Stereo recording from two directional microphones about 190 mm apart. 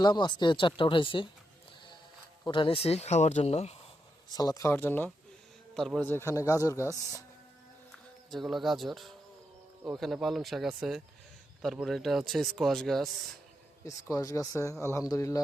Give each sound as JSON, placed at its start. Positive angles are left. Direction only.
{"t": 0.0, "sound": "speech", "side_deg": 25}
{"t": 2.4, "sound": "speech", "side_deg": 25}
{"t": 4.3, "sound": "a man's voice", "side_deg": 20}
{"t": 8.3, "sound": "speech", "side_deg": 0}
{"t": 13.8, "sound": "a man's voice", "side_deg": 15}